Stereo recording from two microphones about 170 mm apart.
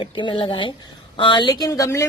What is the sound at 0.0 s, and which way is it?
Speech, 30° left (ahead or behind).